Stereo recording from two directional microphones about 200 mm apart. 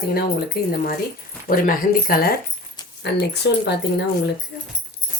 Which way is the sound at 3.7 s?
55° left (ahead or behind).